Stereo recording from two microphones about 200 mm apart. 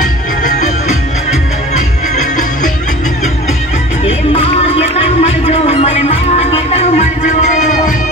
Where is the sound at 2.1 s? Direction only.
40° left (ahead or behind).